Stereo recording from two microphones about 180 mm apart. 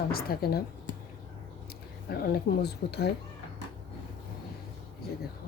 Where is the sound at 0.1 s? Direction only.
55° left (ahead or behind).